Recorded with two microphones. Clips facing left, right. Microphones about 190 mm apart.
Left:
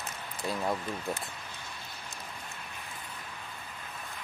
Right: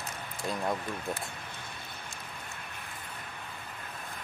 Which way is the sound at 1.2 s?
55° right (ahead or behind).